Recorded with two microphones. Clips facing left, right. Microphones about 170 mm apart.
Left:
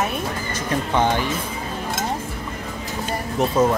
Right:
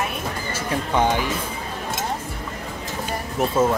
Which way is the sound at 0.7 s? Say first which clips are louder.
Left 1 dB; 10° right (ahead or behind).